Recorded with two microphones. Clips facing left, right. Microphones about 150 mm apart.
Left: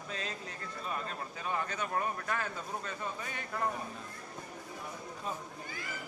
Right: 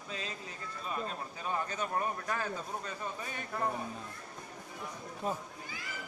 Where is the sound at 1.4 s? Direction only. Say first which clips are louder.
Even; 20° right (ahead or behind).